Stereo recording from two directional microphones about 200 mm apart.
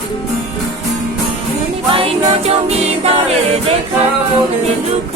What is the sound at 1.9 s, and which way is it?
Music, 30° right (ahead or behind).